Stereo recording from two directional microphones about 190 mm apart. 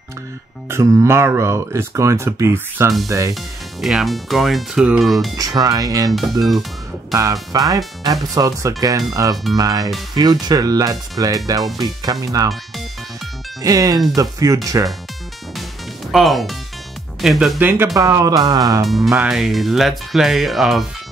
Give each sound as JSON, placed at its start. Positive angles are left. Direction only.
{"t": 0.7, "sound": "speech", "side_deg": -15}
{"t": 3.8, "sound": "speech", "side_deg": 0}
{"t": 5.4, "sound": "speech", "side_deg": -20}
{"t": 7.5, "sound": "speech", "side_deg": -20}
{"t": 13.6, "sound": "speech", "side_deg": -20}
{"t": 16.1, "sound": "speech", "side_deg": 0}
{"t": 18.9, "sound": "speech", "side_deg": 0}